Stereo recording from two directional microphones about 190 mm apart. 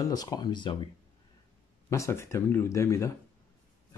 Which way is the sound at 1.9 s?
15° left (ahead or behind).